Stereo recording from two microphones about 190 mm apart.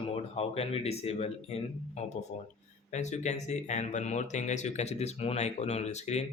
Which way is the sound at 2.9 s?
40° left (ahead or behind).